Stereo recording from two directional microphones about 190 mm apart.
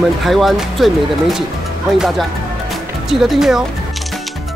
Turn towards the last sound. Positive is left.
turn(degrees=0)  # may be behind; listen again after turning